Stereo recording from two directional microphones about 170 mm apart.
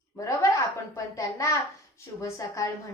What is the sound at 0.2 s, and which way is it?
A child's voice, 20° left (ahead or behind).